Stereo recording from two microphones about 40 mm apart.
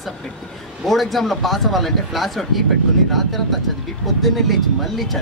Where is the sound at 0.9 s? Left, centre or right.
Centre.